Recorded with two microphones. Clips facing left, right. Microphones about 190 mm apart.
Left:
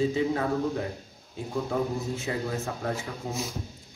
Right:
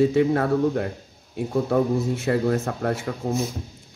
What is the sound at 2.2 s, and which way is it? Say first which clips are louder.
Speech: right 9 dB; 60° right (ahead or behind).